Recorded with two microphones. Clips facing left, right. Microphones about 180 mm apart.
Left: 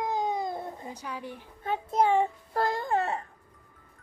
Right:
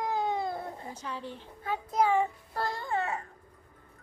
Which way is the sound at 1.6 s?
25° left (ahead or behind).